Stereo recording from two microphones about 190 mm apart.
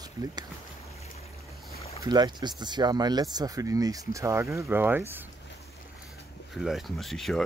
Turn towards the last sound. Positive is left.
turn(degrees=0)  # may be behind; listen again after turning